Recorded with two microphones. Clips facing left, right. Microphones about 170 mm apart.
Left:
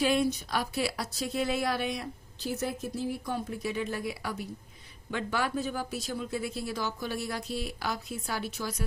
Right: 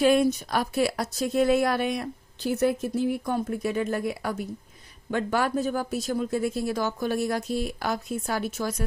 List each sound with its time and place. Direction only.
0.0 s a woman's voice: 50° right (ahead or behind)